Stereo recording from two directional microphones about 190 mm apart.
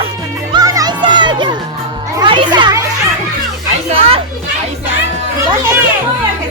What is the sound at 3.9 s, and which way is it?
Music, 30° right (ahead or behind).